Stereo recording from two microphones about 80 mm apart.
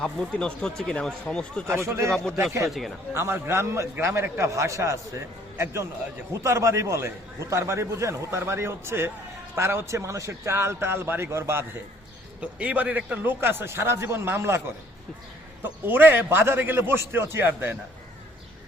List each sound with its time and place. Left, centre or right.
0.0 s speech: centre
1.9 s a man's voice: right
2.6 s speech: centre
3.2 s a man's voice: right
12.4 s a man's voice: centre; by 14.6 s right
15.6 s a man's voice: right